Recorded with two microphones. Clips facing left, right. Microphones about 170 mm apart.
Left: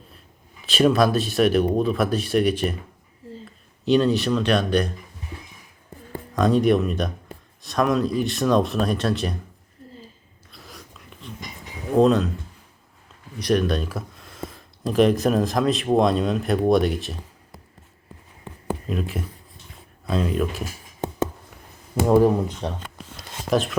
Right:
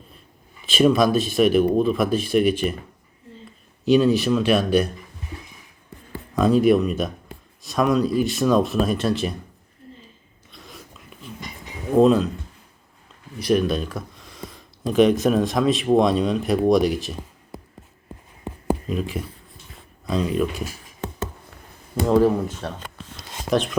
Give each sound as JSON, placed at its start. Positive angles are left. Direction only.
{"t": 0.6, "sound": "speech", "side_deg": 0}
{"t": 3.8, "sound": "speech", "side_deg": -5}
{"t": 6.3, "sound": "speech", "side_deg": -5}
{"t": 10.5, "sound": "a sound", "side_deg": 0}
{"t": 11.9, "sound": "speech", "side_deg": 0}
{"t": 13.4, "sound": "speech", "side_deg": 0}
{"t": 18.9, "sound": "speech", "side_deg": 0}
{"t": 22.0, "sound": "speech", "side_deg": 15}